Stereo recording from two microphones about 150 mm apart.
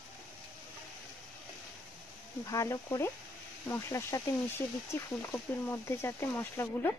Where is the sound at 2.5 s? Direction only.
20° left (ahead or behind).